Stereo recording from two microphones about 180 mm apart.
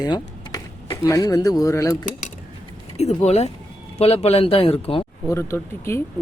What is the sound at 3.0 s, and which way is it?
Speech, 35° left (ahead or behind).